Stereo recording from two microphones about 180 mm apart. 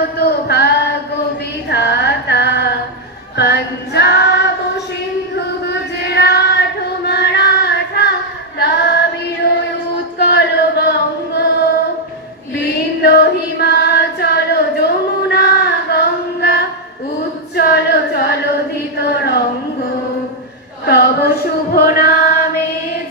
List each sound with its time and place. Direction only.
0.2 s music: 65° left (ahead or behind)
1.7 s female singing: 65° left (ahead or behind)
5.3 s a sound: 65° left (ahead or behind)
7.1 s child singing: 65° left (ahead or behind)
10.1 s chant: 65° left (ahead or behind)
12.5 s female singing: 65° left (ahead or behind)
18.9 s a sound: 65° left (ahead or behind)
20.8 s a sound: 60° left (ahead or behind)
21.7 s chant: 55° left (ahead or behind)